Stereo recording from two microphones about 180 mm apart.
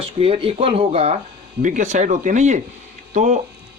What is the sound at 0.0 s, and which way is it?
Speech, 30° right (ahead or behind).